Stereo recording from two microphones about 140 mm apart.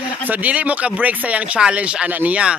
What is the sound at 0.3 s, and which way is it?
Speech, 10° right (ahead or behind).